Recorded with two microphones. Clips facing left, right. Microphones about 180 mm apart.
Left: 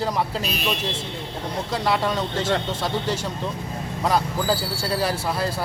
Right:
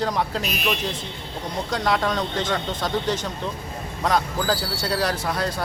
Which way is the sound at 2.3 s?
30° left (ahead or behind).